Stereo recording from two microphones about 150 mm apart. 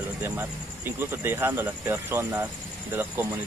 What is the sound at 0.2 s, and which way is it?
Speech, 15° right (ahead or behind).